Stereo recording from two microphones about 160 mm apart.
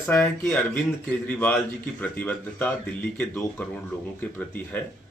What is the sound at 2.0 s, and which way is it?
Speech, 10° left (ahead or behind).